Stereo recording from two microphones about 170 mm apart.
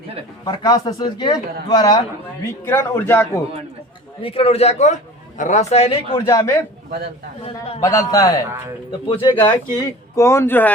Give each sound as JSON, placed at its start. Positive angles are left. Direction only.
{"t": 0.4, "sound": "speech", "side_deg": 20}
{"t": 2.6, "sound": "speech", "side_deg": 10}
{"t": 4.2, "sound": "a man's voice", "side_deg": 35}
{"t": 6.1, "sound": "speech", "side_deg": 20}
{"t": 7.8, "sound": "speech", "side_deg": 20}